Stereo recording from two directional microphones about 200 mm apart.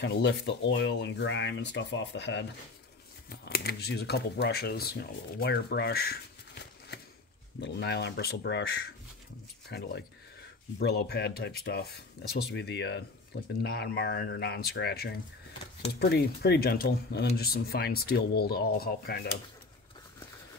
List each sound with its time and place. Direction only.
0.0 s speech: 60° left (ahead or behind)
3.3 s speech: 50° left (ahead or behind)
7.6 s speech: 55° left (ahead or behind)
9.7 s speech: 55° left (ahead or behind)